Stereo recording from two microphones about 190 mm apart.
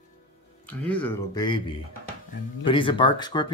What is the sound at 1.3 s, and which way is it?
Speech, 25° left (ahead or behind).